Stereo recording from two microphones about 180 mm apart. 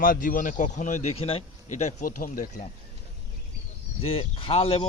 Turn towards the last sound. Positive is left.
turn(degrees=30)  # may be behind; listen again after turning